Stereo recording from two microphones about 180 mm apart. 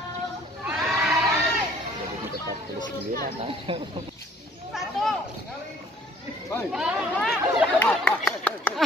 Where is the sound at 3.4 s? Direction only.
30° right (ahead or behind).